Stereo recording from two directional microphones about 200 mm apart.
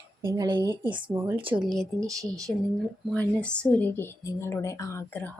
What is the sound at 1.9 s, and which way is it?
Speech, 15° right (ahead or behind).